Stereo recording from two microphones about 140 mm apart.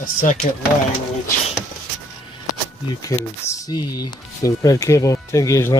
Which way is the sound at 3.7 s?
30° left (ahead or behind).